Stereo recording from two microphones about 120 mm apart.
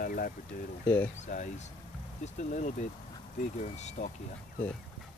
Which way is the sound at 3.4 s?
75° left (ahead or behind).